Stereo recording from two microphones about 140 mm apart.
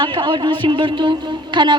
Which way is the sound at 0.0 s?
35° right (ahead or behind).